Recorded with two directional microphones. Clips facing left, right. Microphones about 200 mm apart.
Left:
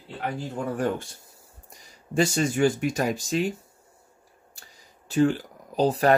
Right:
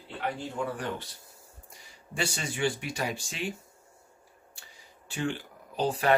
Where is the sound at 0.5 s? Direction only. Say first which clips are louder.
Left 6 dB; 45° left (ahead or behind).